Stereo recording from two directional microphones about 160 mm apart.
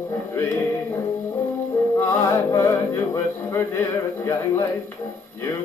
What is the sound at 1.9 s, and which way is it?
Music, 15° left (ahead or behind).